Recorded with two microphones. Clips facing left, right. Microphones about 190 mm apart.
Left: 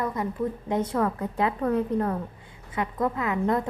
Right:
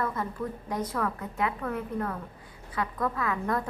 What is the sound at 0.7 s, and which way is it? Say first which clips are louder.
A woman's voice: left 5 dB; 25° left (ahead or behind).